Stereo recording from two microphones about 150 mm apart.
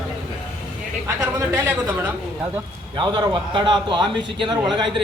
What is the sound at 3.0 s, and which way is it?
A man's voice, 30° right (ahead or behind).